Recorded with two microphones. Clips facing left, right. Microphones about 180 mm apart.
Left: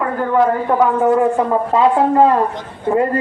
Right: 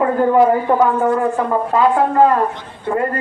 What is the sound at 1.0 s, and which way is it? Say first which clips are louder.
Speech: left 3 dB; 20° left (ahead or behind).